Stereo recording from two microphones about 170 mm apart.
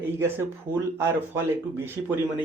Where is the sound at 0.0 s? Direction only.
15° right (ahead or behind).